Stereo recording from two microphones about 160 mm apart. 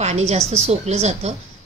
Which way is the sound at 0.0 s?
45° right (ahead or behind).